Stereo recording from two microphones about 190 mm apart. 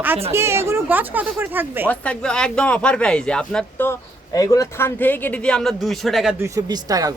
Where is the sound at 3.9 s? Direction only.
20° left (ahead or behind); by 6.3 s centre (ahead or behind).